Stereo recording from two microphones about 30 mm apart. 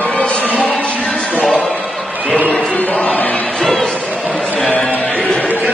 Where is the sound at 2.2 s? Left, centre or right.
Left.